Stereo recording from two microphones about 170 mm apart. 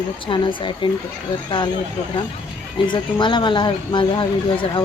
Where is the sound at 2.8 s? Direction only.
30° left (ahead or behind).